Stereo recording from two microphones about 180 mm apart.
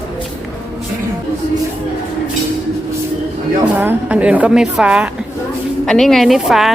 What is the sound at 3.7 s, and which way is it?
A woman's voice, 10° right (ahead or behind).